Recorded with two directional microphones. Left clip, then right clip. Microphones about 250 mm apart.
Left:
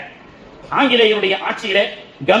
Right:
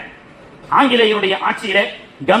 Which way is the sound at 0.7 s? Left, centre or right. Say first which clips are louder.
Right 1 dB; right.